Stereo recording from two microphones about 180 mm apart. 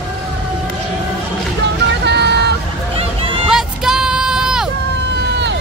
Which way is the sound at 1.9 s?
70° right (ahead or behind).